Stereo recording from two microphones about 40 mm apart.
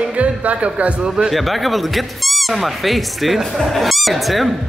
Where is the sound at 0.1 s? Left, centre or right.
Right.